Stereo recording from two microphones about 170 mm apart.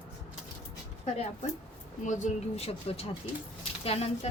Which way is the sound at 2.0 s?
45° left (ahead or behind).